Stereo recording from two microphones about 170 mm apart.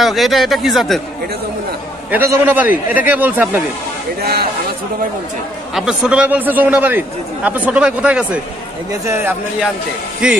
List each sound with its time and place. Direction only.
0.0 s a man's voice: centre (ahead or behind)
2.0 s a man's voice: 10° right (ahead or behind)
4.2 s speech: 70° right (ahead or behind)
5.8 s a man's voice: 5° right (ahead or behind)
10.2 s a man's voice: 5° right (ahead or behind)